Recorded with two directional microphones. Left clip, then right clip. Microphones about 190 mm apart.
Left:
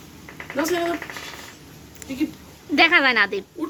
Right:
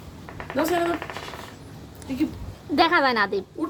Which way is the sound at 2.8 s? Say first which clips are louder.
Left 3 dB; centre (ahead or behind).